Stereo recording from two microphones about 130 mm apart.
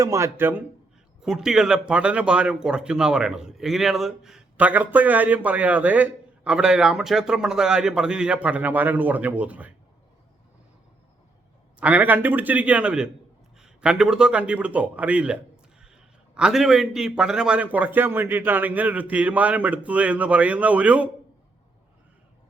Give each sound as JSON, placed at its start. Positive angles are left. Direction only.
{"t": 0.0, "sound": "speech", "side_deg": -25}
{"t": 1.2, "sound": "speech", "side_deg": -5}
{"t": 11.8, "sound": "speech", "side_deg": -10}